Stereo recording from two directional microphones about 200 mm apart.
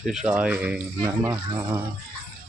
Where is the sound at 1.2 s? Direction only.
20° right (ahead or behind).